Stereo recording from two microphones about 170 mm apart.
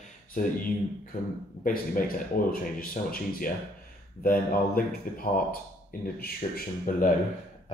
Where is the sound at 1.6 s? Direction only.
55° left (ahead or behind).